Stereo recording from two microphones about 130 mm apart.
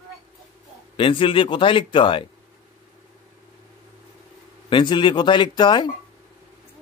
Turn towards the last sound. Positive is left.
turn(degrees=35)  # may be behind; listen again after turning